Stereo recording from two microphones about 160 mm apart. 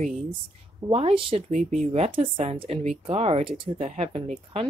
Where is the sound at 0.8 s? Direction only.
35° right (ahead or behind).